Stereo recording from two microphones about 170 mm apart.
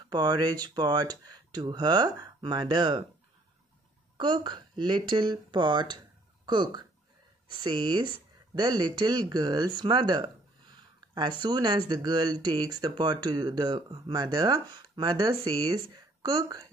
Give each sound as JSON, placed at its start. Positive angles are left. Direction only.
{"t": 0.1, "sound": "speech", "side_deg": -25}
{"t": 4.2, "sound": "a woman's voice", "side_deg": -25}